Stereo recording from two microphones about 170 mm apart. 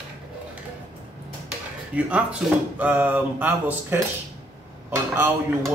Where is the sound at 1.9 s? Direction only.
10° right (ahead or behind).